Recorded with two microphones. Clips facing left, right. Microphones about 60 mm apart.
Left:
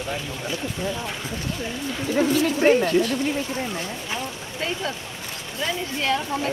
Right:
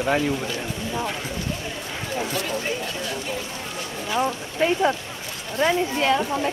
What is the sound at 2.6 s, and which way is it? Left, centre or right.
Speech, left.